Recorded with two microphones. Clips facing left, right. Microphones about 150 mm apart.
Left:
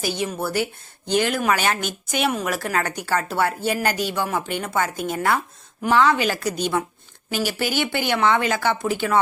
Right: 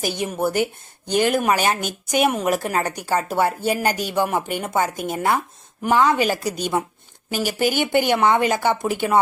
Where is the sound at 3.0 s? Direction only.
15° right (ahead or behind).